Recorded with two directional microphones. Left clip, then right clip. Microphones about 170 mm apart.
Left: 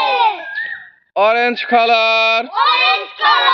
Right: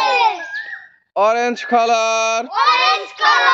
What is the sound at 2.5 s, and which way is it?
Speech, 35° right (ahead or behind).